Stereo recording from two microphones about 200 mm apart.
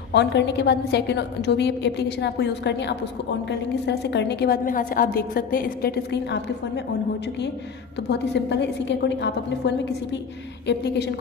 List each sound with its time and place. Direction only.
0.1 s a woman's voice: 60° left (ahead or behind)
8.1 s a woman's voice: 60° left (ahead or behind)